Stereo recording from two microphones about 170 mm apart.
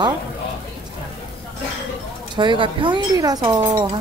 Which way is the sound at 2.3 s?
30° right (ahead or behind).